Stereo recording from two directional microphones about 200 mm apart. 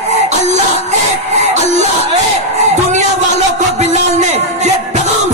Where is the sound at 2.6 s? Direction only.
35° right (ahead or behind).